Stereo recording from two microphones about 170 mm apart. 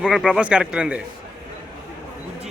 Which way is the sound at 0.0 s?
5° right (ahead or behind).